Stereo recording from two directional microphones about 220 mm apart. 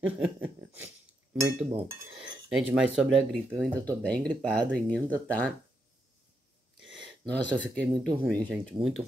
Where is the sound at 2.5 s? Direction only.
5° right (ahead or behind).